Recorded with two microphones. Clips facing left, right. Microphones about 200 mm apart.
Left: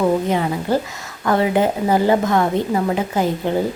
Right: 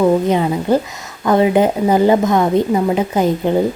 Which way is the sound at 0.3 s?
20° right (ahead or behind).